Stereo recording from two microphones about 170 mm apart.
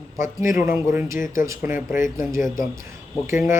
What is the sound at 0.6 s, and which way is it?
Speech, 10° right (ahead or behind).